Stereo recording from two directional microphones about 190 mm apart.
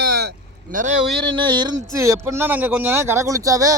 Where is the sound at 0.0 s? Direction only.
60° right (ahead or behind).